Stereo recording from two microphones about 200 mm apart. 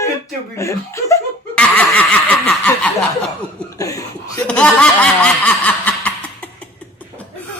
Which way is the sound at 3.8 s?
15° left (ahead or behind).